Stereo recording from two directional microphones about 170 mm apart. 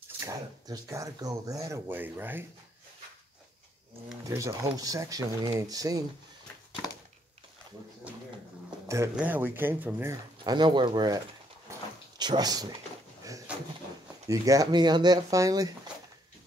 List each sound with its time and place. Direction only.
0.2 s speech: 20° right (ahead or behind)
4.3 s speech: 15° right (ahead or behind)
8.8 s a sound: 15° right (ahead or behind)
9.1 s speech: 10° right (ahead or behind)
10.4 s speech: 25° right (ahead or behind)
11.7 s a sound: 15° right (ahead or behind)
12.2 s speech: 25° right (ahead or behind)
14.2 s speech: 20° right (ahead or behind)